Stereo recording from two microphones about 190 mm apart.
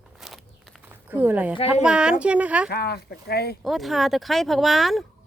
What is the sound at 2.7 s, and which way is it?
Speech, 55° left (ahead or behind).